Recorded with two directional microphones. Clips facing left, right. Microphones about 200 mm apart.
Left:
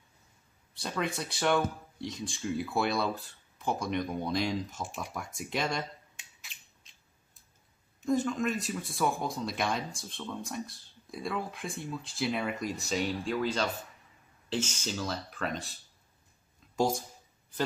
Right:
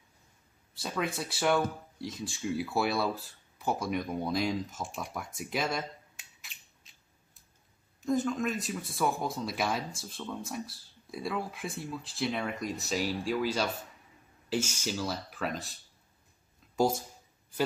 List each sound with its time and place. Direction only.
0.7 s speech: centre (ahead or behind)
8.0 s speech: centre (ahead or behind)